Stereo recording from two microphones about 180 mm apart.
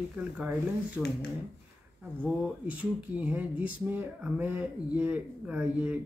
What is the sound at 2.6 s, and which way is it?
Speech, 10° right (ahead or behind).